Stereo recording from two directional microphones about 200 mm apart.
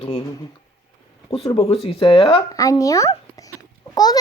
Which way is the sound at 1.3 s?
30° left (ahead or behind).